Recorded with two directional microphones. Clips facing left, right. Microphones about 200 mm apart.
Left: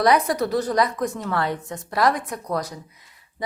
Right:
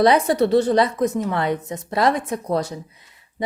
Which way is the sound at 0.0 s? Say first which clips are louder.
Right 3 dB; 25° right (ahead or behind).